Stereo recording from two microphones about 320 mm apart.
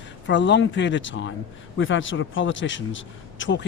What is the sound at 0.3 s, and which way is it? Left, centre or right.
A man's voice, left.